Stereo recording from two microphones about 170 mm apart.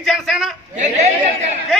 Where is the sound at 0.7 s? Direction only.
45° right (ahead or behind).